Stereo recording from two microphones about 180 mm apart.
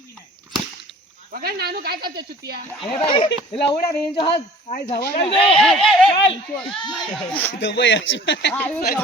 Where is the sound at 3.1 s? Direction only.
30° left (ahead or behind).